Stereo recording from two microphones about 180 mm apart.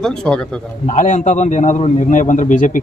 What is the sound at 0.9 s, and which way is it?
A man's voice, 45° left (ahead or behind).